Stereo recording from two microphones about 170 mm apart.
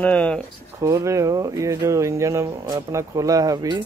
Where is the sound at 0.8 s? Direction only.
20° right (ahead or behind).